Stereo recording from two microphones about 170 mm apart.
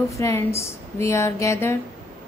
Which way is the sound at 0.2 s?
15° left (ahead or behind).